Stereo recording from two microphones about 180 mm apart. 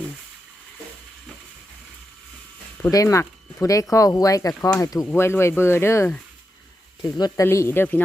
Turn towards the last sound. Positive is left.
turn(degrees=10)  # may be behind; listen again after turning